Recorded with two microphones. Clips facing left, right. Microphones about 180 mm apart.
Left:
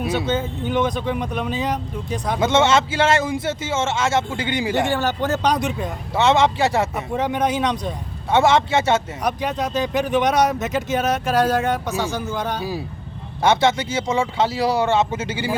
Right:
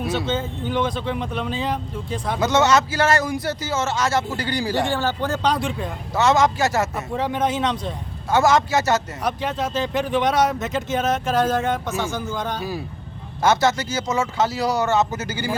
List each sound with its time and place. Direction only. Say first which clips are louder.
0.1 s speech: left 2 dB; 15° left (ahead or behind)
6.9 s speech: left 2 dB; 15° left (ahead or behind)
8.3 s speech: left 1 dB; 25° left (ahead or behind)
9.2 s speech: left 1 dB; 15° left (ahead or behind)